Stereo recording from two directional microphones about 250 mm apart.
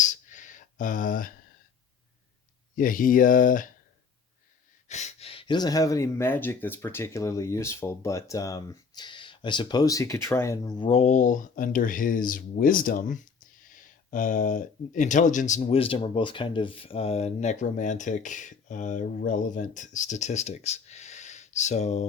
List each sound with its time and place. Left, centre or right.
0.0 s a sound: left
2.7 s speech: left
4.9 s speech: left